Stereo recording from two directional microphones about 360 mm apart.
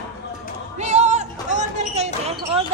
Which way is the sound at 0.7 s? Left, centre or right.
Centre.